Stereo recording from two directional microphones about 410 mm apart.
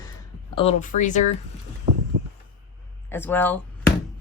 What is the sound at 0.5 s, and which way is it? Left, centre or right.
Speech, centre.